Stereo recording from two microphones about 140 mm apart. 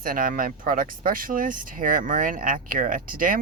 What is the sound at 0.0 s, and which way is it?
Speech, 80° right.